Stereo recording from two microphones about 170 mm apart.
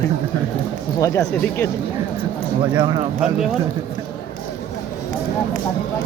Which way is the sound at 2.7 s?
25° right (ahead or behind).